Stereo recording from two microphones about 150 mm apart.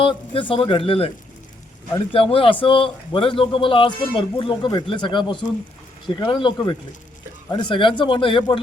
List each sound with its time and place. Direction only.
0.0 s speech: 35° left (ahead or behind)
2.3 s speech: 35° left (ahead or behind)